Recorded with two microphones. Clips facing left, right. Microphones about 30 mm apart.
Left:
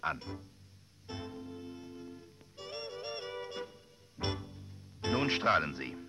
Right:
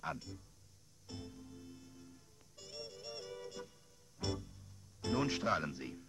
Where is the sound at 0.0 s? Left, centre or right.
Left.